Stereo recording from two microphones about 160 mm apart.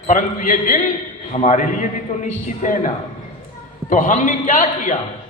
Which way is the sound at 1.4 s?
45° left (ahead or behind).